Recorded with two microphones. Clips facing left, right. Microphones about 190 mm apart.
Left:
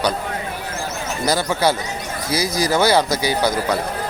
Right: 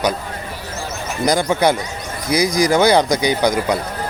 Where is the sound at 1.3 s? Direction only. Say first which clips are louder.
Right 3 dB; 15° right (ahead or behind).